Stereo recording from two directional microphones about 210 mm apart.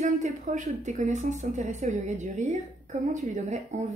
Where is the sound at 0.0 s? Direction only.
35° right (ahead or behind).